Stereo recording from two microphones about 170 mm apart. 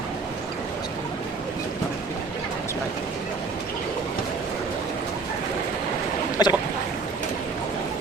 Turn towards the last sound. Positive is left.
turn(degrees=25)  # may be behind; listen again after turning